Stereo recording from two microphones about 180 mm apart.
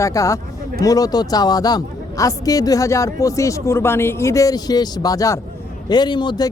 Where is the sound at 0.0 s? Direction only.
15° left (ahead or behind).